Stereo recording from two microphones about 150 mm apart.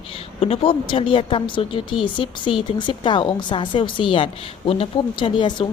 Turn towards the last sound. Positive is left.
turn(degrees=35)  # may be behind; listen again after turning